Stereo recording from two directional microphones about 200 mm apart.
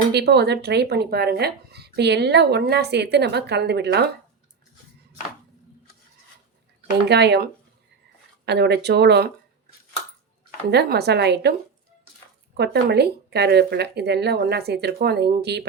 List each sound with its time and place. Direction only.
0.1 s speech: 55° right (ahead or behind)
7.1 s speech: 55° right (ahead or behind)
10.7 s speech: 55° right (ahead or behind)
12.5 s speech: 55° right (ahead or behind)